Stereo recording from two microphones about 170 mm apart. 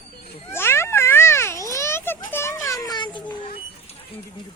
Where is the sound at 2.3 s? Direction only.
15° left (ahead or behind).